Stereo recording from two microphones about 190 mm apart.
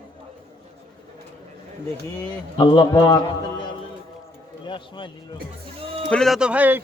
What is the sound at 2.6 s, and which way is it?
Speech, 25° left (ahead or behind).